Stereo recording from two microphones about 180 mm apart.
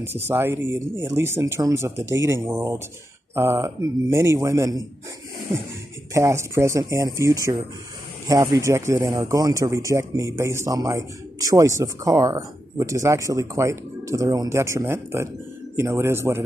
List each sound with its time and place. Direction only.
0.0 s speech: 15° right (ahead or behind)
6.1 s speech: 15° right (ahead or behind)